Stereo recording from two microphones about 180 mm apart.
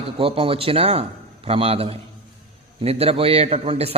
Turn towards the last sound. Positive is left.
turn(degrees=-35)  # may be behind; listen again after turning